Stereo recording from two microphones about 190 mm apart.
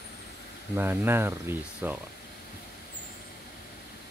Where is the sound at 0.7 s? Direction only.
10° right (ahead or behind).